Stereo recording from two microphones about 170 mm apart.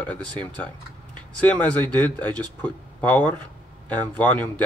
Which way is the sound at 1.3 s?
10° left (ahead or behind).